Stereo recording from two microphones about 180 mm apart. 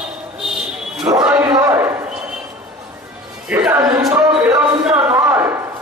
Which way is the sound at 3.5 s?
10° right (ahead or behind).